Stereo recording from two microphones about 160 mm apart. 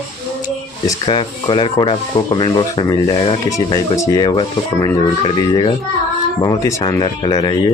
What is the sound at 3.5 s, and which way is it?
Speech, 20° left (ahead or behind).